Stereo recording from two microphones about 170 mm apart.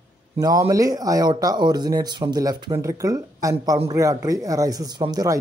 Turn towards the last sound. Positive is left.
turn(degrees=-25)  # may be behind; listen again after turning